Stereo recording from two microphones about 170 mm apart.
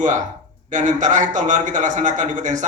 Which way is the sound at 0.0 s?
45° right (ahead or behind).